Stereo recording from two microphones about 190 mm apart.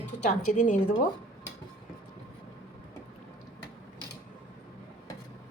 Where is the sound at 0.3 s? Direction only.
40° left (ahead or behind).